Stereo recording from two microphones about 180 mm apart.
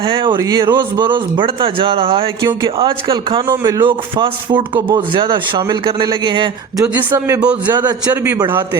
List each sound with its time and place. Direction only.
0.0 s speech: 30° right (ahead or behind)
6.8 s a man's voice: 10° right (ahead or behind)
7.7 s a man's voice: 25° right (ahead or behind)